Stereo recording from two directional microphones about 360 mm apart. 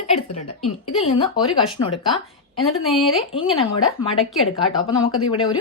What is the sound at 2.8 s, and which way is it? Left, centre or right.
Speech, centre.